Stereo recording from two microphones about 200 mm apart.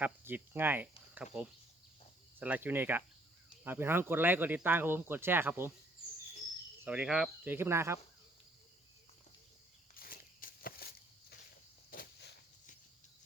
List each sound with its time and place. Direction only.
0.0 s speech: 10° right (ahead or behind)
6.8 s speech: 5° right (ahead or behind)
9.9 s walk: 45° left (ahead or behind)
11.9 s a sound: 45° left (ahead or behind)